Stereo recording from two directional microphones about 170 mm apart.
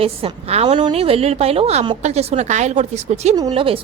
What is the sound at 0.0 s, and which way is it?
A woman's voice, 35° right (ahead or behind).